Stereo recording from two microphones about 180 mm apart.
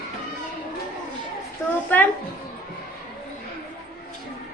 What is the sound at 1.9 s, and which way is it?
Speech, 10° left (ahead or behind).